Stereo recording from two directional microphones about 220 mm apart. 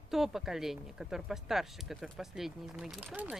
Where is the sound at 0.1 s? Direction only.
Centre (ahead or behind).